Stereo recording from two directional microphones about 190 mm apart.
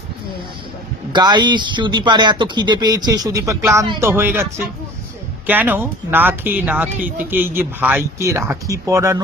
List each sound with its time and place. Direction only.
1.1 s speech: 25° right (ahead or behind)